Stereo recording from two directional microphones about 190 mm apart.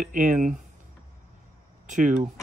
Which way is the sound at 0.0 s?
45° right (ahead or behind).